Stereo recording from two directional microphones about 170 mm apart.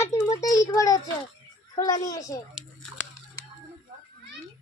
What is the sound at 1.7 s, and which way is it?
Speech, 20° left (ahead or behind).